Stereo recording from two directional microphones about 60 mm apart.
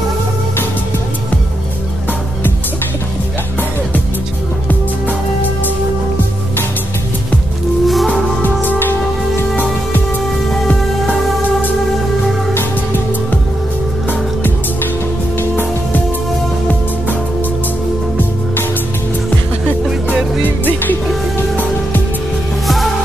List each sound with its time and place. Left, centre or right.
7.8 s music: centre
8.4 s music: left
15.3 s music: left